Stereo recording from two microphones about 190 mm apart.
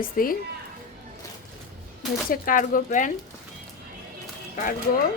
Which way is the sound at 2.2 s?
45° left (ahead or behind).